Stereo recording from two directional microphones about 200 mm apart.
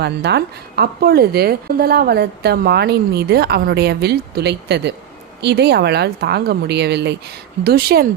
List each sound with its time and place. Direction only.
0.0 s a woman's voice: 55° right (ahead or behind)